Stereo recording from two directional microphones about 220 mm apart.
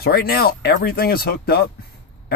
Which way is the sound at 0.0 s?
45° left (ahead or behind).